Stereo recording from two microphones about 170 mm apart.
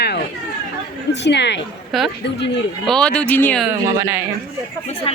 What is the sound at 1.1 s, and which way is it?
Speech, 90° left.